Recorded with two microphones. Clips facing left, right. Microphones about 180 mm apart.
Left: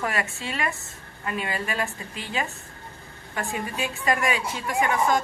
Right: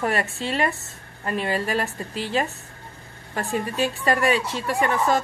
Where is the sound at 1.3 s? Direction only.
35° right (ahead or behind).